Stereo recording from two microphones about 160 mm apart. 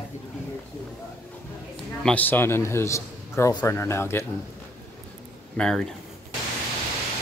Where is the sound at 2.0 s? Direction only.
10° left (ahead or behind).